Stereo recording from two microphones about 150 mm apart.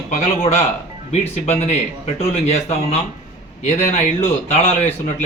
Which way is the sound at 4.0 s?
45° left (ahead or behind).